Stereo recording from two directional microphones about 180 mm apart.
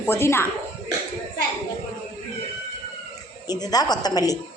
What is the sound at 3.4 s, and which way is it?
Speech, 20° left (ahead or behind).